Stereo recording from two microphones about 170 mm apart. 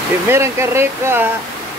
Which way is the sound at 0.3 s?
15° right (ahead or behind).